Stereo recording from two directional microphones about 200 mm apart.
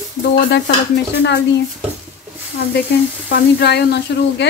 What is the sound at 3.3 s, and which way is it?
Speech, 55° left (ahead or behind).